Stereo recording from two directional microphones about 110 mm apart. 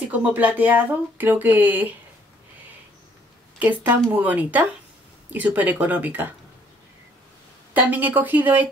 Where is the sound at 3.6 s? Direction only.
15° right (ahead or behind).